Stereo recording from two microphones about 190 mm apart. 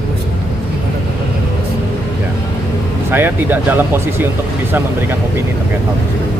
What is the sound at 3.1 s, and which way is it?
Speech, 10° right (ahead or behind).